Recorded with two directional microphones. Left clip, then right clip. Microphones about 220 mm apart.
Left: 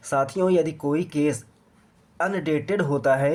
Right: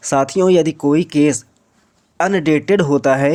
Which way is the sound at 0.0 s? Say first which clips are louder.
Right 8 dB; 30° right (ahead or behind).